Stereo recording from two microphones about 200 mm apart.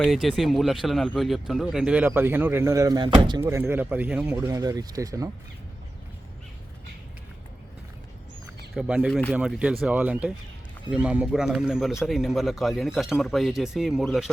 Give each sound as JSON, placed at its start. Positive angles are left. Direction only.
{"t": 0.0, "sound": "speech", "side_deg": 0}
{"t": 8.7, "sound": "speech", "side_deg": -5}